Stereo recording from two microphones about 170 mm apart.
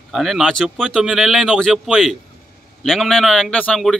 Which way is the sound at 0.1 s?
Centre (ahead or behind).